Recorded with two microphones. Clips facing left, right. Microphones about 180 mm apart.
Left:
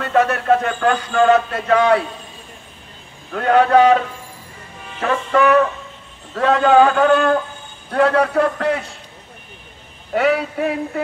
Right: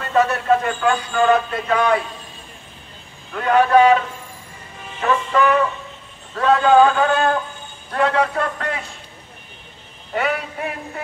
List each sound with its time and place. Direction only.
0.0 s speech: 60° left (ahead or behind)
3.3 s speech: 55° left (ahead or behind)
5.0 s music: 65° left (ahead or behind)
6.4 s speech: 60° left (ahead or behind)
10.1 s music: 70° left (ahead or behind)